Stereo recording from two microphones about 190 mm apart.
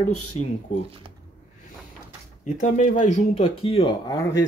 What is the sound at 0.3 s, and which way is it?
Speech, 30° left (ahead or behind).